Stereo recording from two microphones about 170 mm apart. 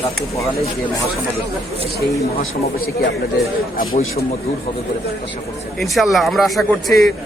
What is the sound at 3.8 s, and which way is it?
Speech, 55° left (ahead or behind).